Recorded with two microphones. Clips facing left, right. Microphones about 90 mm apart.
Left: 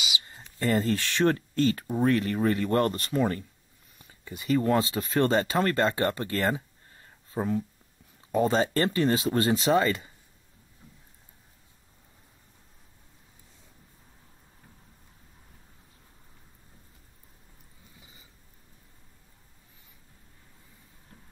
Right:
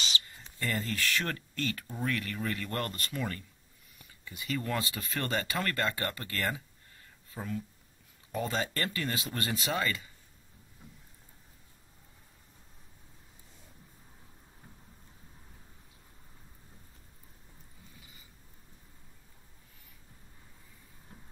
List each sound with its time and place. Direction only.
0.3 s speech: 25° left (ahead or behind)